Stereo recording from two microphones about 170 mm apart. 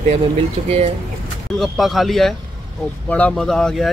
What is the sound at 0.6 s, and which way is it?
Speech, 40° right (ahead or behind).